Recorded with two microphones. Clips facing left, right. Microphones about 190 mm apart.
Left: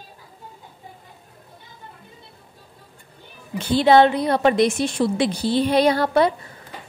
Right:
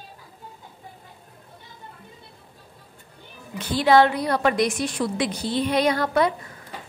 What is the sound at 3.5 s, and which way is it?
A woman's voice, 30° left (ahead or behind).